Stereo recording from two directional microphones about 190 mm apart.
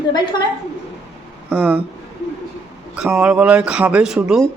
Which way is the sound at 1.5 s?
10° right (ahead or behind).